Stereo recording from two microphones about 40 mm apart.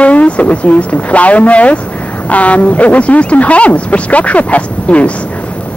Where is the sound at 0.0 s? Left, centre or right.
Left.